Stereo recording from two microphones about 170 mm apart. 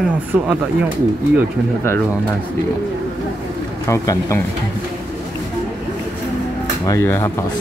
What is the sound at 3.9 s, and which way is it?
Speech, 15° left (ahead or behind).